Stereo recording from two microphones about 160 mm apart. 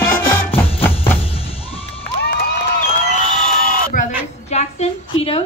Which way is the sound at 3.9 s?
60° left (ahead or behind).